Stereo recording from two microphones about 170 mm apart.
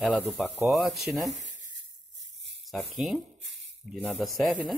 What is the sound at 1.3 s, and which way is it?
Speech, 45° right (ahead or behind).